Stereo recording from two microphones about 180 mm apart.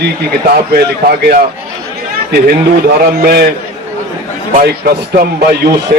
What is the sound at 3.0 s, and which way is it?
Speech, 60° right (ahead or behind).